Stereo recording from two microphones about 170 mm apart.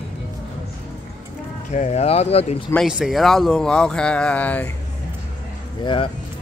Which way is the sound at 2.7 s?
Centre (ahead or behind).